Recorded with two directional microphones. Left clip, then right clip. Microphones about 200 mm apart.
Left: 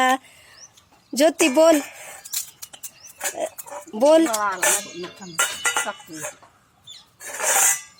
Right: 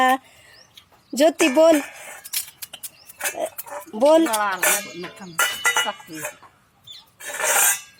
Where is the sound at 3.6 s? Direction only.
5° left (ahead or behind).